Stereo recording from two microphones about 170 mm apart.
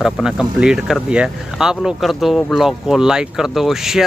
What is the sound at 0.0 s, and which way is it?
Speech, 5° right (ahead or behind).